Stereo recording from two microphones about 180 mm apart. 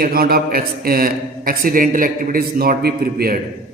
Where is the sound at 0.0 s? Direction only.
55° right (ahead or behind).